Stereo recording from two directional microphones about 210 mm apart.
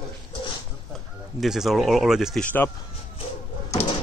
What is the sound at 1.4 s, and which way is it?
Speech, centre (ahead or behind).